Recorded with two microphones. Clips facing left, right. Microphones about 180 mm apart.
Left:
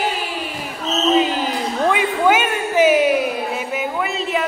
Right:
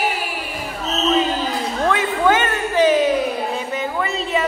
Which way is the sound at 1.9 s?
10° left (ahead or behind).